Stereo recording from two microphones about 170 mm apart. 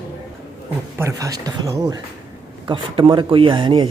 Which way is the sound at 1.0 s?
20° right (ahead or behind).